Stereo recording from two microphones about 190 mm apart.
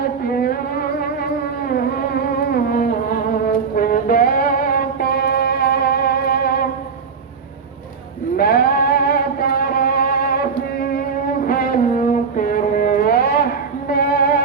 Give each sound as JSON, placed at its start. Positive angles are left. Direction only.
{"t": 0.3, "sound": "music", "side_deg": 55}
{"t": 2.5, "sound": "music", "side_deg": 50}
{"t": 8.4, "sound": "music", "side_deg": 50}